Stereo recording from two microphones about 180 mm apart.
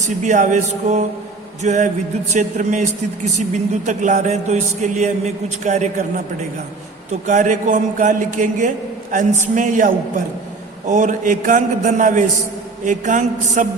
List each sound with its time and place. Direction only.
0.0 s a man's voice: 45° right (ahead or behind)
7.1 s a man's voice: 45° right (ahead or behind)